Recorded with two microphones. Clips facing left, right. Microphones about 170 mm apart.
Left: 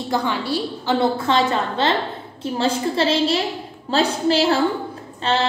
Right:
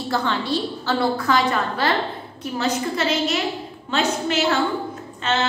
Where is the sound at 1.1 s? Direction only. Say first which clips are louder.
Left 1 dB; 25° left (ahead or behind).